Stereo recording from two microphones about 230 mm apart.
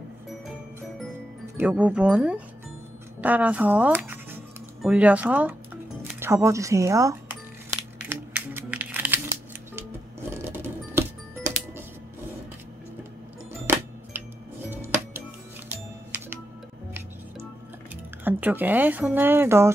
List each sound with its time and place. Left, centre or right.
1.6 s speech: centre
6.1 s coin: centre
10.4 s a sound: centre
13.7 s music: centre
15.7 s music: centre
18.2 s speech: centre